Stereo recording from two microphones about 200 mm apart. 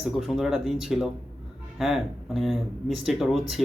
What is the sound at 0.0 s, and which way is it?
Speech, centre (ahead or behind).